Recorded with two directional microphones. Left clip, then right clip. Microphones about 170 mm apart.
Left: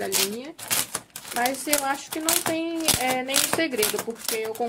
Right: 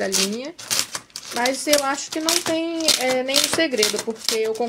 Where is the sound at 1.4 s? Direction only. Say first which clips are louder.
Right 6 dB; 50° right (ahead or behind).